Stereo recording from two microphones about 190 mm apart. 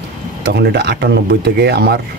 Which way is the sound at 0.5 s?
60° right (ahead or behind).